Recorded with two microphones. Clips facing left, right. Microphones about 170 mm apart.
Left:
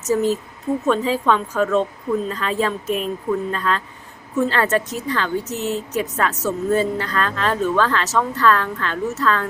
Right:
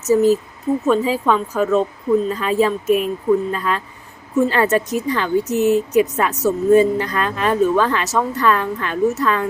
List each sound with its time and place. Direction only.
0.1 s a woman's voice: 5° right (ahead or behind)